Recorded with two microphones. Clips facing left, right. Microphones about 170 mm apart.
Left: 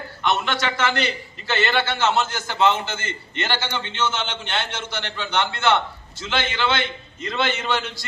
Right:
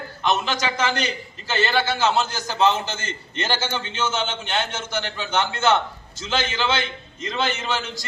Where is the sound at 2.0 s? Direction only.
40° right (ahead or behind).